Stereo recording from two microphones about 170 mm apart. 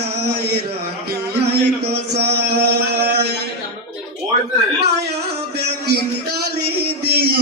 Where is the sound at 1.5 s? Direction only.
75° right (ahead or behind).